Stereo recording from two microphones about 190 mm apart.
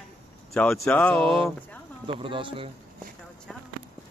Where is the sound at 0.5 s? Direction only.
5° left (ahead or behind).